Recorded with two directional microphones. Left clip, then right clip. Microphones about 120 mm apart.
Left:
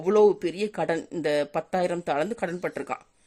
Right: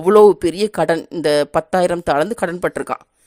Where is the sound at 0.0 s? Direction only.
50° right (ahead or behind).